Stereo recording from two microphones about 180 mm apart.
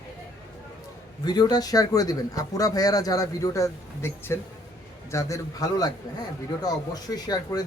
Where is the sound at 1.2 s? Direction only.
20° left (ahead or behind).